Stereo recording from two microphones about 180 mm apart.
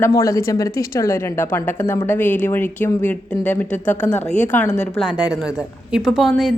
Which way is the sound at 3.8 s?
40° left (ahead or behind).